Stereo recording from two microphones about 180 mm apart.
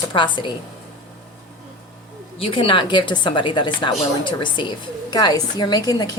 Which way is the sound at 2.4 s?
30° left (ahead or behind).